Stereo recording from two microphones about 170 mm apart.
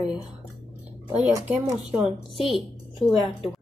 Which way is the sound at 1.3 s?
20° right (ahead or behind).